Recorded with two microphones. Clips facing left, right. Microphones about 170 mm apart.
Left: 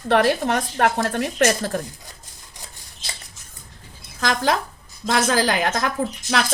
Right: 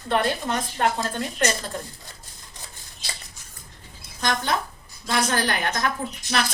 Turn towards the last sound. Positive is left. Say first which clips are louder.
# left 4 dB
turn(degrees=90)